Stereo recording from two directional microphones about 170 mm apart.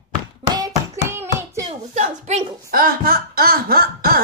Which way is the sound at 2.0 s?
40° right (ahead or behind).